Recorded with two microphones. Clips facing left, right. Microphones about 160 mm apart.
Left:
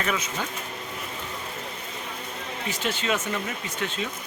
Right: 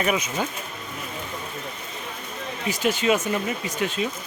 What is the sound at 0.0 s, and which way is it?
Speech, 15° right (ahead or behind).